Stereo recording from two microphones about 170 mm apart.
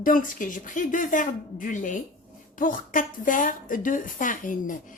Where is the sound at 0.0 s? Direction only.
50° left (ahead or behind).